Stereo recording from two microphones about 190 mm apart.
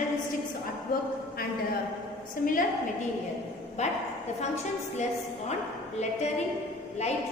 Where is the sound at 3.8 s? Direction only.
35° left (ahead or behind).